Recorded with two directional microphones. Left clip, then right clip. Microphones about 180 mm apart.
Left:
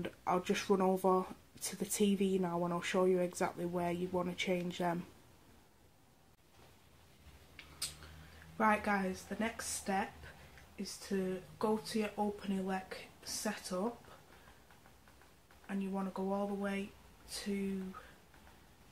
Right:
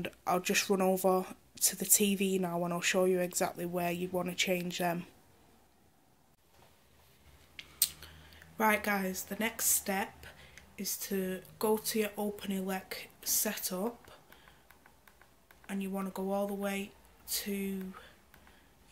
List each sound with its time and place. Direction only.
0.0 s speech: 10° right (ahead or behind)
8.5 s speech: 15° right (ahead or behind)
15.6 s speech: 15° right (ahead or behind)